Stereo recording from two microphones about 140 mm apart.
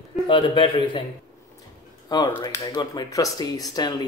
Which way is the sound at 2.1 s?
30° left (ahead or behind).